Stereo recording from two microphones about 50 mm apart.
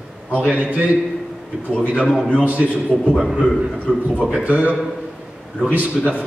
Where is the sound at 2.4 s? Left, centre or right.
Right.